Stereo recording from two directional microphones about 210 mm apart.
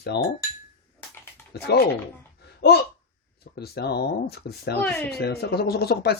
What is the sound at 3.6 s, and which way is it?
Speech, 50° left (ahead or behind).